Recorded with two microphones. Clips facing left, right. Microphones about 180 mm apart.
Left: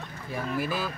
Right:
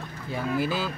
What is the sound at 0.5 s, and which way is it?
Speech, 25° right (ahead or behind).